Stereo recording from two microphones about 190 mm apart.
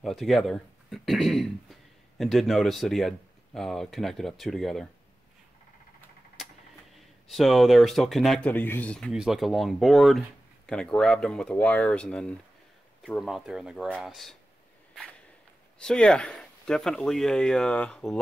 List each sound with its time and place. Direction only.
0.0 s speech: centre (ahead or behind)
6.4 s a sound: centre (ahead or behind)
7.2 s speech: centre (ahead or behind)
15.8 s speech: 5° left (ahead or behind)